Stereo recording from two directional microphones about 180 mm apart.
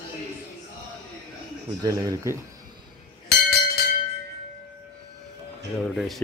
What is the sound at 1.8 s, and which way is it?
Speech, 20° right (ahead or behind).